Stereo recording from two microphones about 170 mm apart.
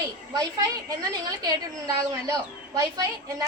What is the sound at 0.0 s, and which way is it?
A woman's voice, 20° right (ahead or behind).